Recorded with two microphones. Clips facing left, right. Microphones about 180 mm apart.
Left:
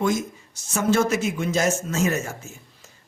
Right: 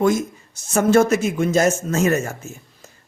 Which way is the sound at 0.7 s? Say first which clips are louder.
Right 6 dB; 50° right (ahead or behind).